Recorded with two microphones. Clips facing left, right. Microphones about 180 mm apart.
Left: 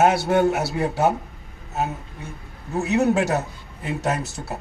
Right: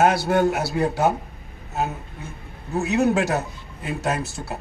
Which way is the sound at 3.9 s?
25° left (ahead or behind).